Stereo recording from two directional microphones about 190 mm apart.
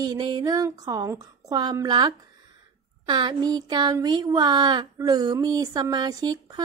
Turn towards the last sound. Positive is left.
turn(degrees=-20)  # may be behind; listen again after turning